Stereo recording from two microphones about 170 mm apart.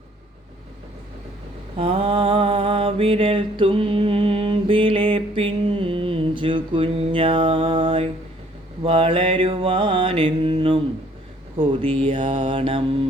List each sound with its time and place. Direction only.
1.8 s mantra: 35° right (ahead or behind)
10.4 s speech: 30° right (ahead or behind)